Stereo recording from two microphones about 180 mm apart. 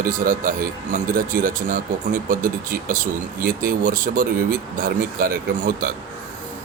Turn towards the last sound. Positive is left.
turn(degrees=-50)  # may be behind; listen again after turning